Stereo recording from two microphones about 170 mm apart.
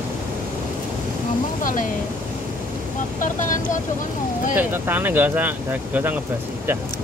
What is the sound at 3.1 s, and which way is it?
Speech, 50° left (ahead or behind).